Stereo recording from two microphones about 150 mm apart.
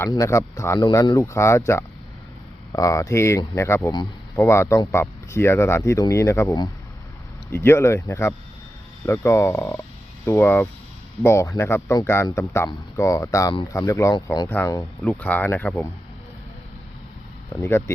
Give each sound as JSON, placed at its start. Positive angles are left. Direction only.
{"t": 0.1, "sound": "speech", "side_deg": 20}
{"t": 17.6, "sound": "speech", "side_deg": 20}